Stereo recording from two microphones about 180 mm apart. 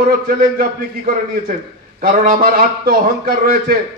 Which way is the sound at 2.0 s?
50° right (ahead or behind).